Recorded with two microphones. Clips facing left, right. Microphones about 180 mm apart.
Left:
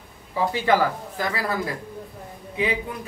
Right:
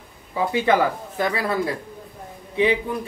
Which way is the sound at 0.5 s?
25° right (ahead or behind).